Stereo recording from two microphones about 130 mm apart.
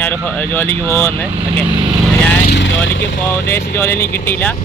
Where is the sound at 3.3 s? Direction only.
15° left (ahead or behind).